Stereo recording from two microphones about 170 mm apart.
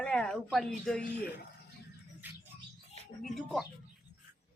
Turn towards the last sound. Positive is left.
turn(degrees=0)  # may be behind; listen again after turning